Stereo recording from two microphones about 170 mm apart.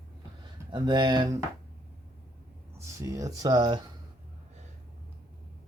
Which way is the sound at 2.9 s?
20° right (ahead or behind).